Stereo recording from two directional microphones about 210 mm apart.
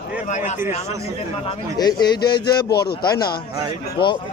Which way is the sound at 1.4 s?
20° left (ahead or behind).